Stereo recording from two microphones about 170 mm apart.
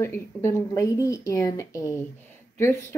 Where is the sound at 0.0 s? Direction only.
15° left (ahead or behind).